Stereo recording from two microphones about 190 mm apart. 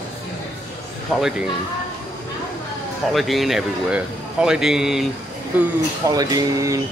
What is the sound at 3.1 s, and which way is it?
Speech, centre (ahead or behind).